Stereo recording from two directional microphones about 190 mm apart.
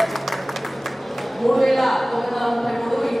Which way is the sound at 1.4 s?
Centre (ahead or behind).